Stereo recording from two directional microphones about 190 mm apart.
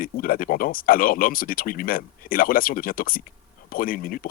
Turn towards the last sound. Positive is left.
turn(degrees=50)  # may be behind; listen again after turning